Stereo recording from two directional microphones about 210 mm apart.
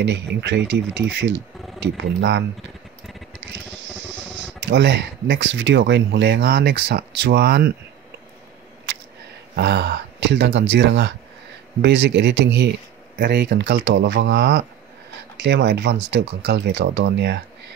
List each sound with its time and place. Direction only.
0.0 s speech: 55° right (ahead or behind)
9.6 s speech: 55° right (ahead or behind)